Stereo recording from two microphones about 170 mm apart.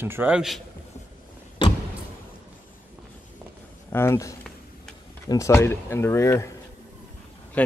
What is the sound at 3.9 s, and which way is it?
Speech, 15° left (ahead or behind).